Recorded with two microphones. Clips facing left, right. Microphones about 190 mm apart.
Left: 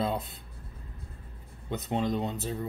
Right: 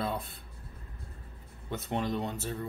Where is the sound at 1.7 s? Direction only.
20° left (ahead or behind).